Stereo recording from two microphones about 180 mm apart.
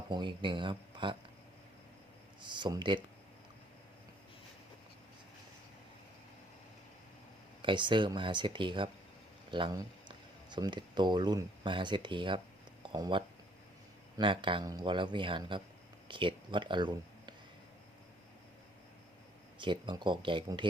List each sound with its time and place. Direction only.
0.1 s speech: 25° right (ahead or behind)
2.4 s speech: 25° right (ahead or behind)
7.6 s speech: 25° right (ahead or behind)
16.0 s a sound: 25° right (ahead or behind)
19.5 s speech: 25° right (ahead or behind)